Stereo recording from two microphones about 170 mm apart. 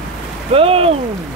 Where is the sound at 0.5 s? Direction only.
35° right (ahead or behind).